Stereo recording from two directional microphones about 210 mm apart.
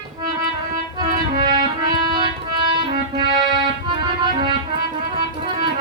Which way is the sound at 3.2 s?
20° right (ahead or behind).